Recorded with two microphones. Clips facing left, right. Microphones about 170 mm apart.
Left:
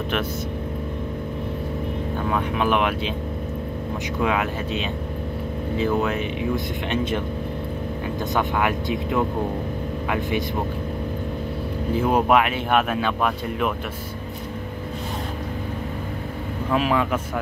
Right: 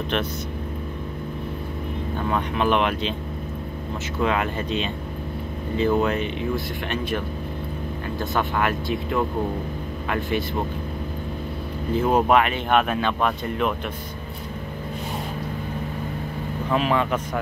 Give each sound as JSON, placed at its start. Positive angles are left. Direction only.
{"t": 2.2, "sound": "speech", "side_deg": 5}
{"t": 4.2, "sound": "speech", "side_deg": 5}
{"t": 6.5, "sound": "speech", "side_deg": 20}
{"t": 8.2, "sound": "speech", "side_deg": 15}
{"t": 11.9, "sound": "speech", "side_deg": 10}
{"t": 16.7, "sound": "speech", "side_deg": 5}